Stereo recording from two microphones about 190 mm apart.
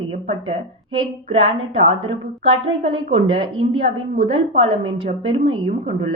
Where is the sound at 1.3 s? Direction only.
30° right (ahead or behind).